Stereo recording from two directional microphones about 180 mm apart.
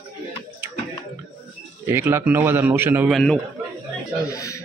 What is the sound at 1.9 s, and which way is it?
A man's voice, 15° right (ahead or behind).